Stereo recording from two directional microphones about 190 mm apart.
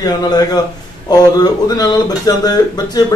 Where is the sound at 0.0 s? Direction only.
20° left (ahead or behind).